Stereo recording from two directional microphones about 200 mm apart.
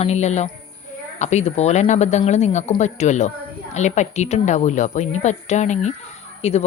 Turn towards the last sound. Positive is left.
turn(degrees=30)  # may be behind; listen again after turning